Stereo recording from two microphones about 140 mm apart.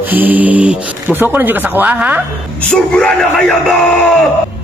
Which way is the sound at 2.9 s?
5° left (ahead or behind).